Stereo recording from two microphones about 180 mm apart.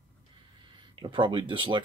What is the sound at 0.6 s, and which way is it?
Speech, 25° right (ahead or behind).